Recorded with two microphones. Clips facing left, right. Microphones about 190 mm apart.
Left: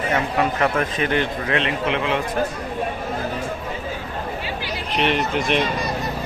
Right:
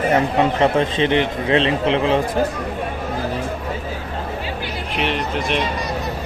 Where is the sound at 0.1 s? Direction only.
25° right (ahead or behind).